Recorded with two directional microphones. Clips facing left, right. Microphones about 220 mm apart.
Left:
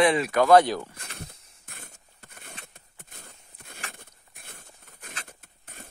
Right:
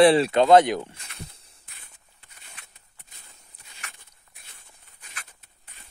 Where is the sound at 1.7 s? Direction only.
45° left (ahead or behind).